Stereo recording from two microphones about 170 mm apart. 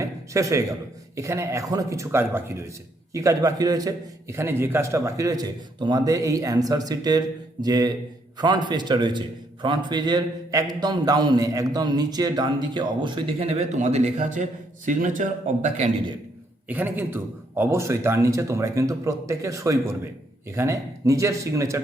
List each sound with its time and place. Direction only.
0.0 s a sound: 20° right (ahead or behind)
1.1 s a man's voice: 15° right (ahead or behind); by 15.9 s 45° right (ahead or behind)
16.6 s a man's voice: 10° right (ahead or behind)